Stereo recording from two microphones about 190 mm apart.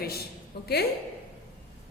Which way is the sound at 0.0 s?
55° left (ahead or behind).